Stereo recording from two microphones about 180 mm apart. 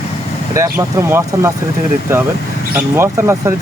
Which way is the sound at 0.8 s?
15° right (ahead or behind).